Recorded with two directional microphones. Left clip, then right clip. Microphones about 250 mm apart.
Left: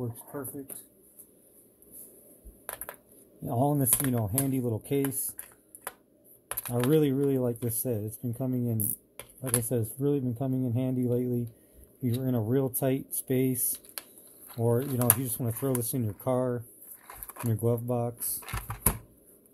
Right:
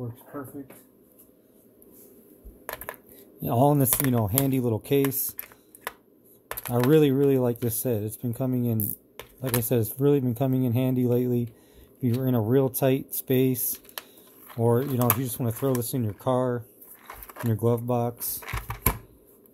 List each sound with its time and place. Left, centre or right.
3.4 s speech: centre
6.7 s speech: centre